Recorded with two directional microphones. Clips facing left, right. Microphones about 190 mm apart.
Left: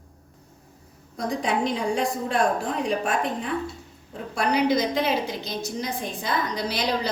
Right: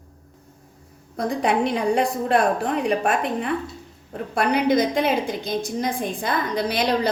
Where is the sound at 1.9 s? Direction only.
65° right (ahead or behind).